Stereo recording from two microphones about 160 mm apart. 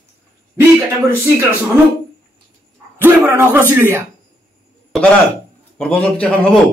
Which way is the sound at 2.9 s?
15° right (ahead or behind).